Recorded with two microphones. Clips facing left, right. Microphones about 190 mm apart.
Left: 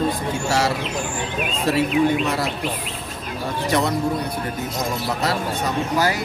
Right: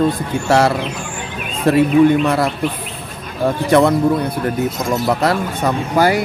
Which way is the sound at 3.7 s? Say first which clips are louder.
Right 9 dB; 55° right (ahead or behind).